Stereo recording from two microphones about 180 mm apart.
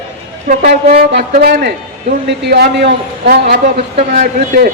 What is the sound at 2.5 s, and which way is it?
A man's voice, 60° right (ahead or behind).